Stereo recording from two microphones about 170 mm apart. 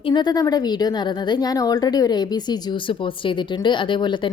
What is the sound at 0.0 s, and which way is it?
A woman's voice, 25° left (ahead or behind).